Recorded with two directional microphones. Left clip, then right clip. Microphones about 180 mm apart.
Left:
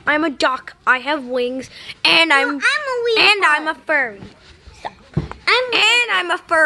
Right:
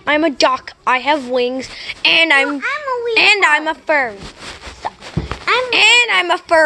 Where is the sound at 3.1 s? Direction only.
10° left (ahead or behind).